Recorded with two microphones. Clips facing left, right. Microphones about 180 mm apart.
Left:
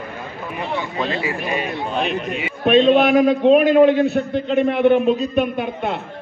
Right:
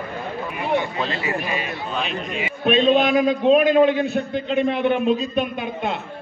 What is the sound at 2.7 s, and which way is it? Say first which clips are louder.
A man's voice: left 4 dB; 60° left (ahead or behind).